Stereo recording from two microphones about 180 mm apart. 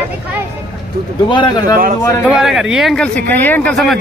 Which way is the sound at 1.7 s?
50° right (ahead or behind).